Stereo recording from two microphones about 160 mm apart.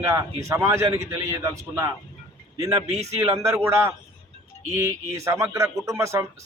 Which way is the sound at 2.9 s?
45° right (ahead or behind).